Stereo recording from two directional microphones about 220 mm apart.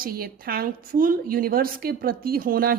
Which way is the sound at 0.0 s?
45° right (ahead or behind).